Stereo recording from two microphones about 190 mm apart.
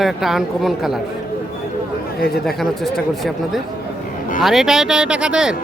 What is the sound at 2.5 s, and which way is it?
Speech, centre (ahead or behind).